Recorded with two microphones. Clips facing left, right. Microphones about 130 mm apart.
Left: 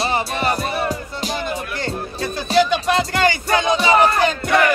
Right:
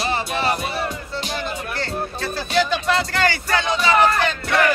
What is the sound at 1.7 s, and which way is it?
Music, 15° left (ahead or behind).